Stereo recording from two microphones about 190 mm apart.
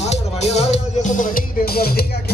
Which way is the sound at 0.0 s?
35° left (ahead or behind).